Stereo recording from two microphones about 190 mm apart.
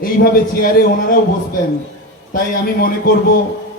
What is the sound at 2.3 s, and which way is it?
Speech, 50° left (ahead or behind).